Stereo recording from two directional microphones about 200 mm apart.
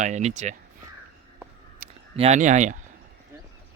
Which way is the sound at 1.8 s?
35° right (ahead or behind).